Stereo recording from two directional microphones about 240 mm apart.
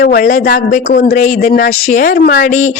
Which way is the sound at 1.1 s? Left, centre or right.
Left.